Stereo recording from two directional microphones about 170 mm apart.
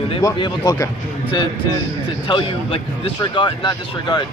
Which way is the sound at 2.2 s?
30° left (ahead or behind).